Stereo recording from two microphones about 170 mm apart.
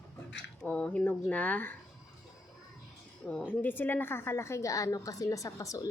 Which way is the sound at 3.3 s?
5° left (ahead or behind).